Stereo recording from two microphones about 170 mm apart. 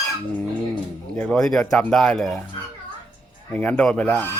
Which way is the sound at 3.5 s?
10° left (ahead or behind).